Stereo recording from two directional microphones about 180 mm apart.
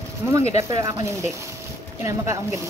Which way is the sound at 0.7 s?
20° right (ahead or behind).